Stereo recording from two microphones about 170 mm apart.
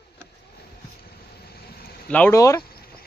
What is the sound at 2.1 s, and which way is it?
Speech, 10° left (ahead or behind).